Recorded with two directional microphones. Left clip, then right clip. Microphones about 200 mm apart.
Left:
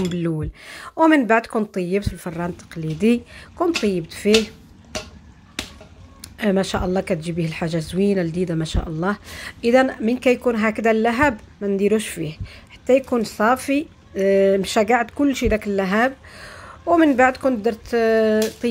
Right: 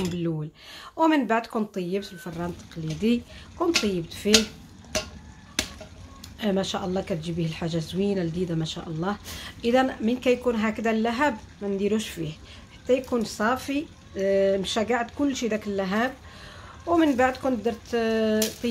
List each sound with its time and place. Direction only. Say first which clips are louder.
0.1 s speech: left 5 dB; 30° left (ahead or behind)
6.3 s speech: left 6 dB; 30° left (ahead or behind)